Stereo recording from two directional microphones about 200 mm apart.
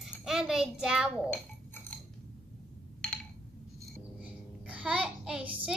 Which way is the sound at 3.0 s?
5° left (ahead or behind).